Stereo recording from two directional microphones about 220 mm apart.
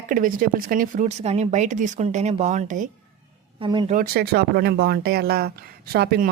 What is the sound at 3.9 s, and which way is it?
Speech, 45° right (ahead or behind).